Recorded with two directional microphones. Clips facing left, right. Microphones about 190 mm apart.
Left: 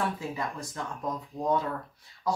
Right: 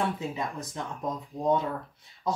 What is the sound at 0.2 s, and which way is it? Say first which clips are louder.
Speech: right 1 dB; 20° right (ahead or behind).